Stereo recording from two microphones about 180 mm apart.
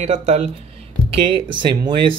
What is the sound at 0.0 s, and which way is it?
Speech, 35° right (ahead or behind).